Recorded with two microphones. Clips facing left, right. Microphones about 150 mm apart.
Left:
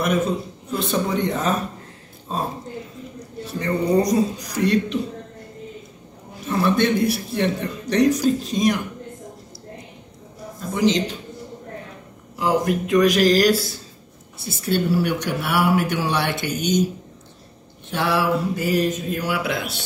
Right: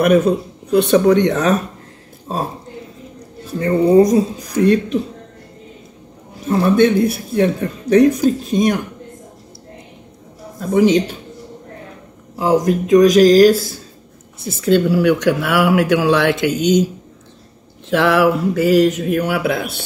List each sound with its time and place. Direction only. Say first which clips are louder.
0.7 s speech: right 11 dB; 70° right (ahead or behind)
3.5 s speech: right 8 dB; 50° right (ahead or behind)
6.6 s speech: right 6 dB; 50° right (ahead or behind)
10.7 s speech: right 7 dB; 55° right (ahead or behind)
12.4 s speech: right 5 dB; 40° right (ahead or behind)
14.6 s speech: right 7 dB; 90° right
17.8 s speech: right 8 dB; 90° right; by 19.8 s 50° right (ahead or behind)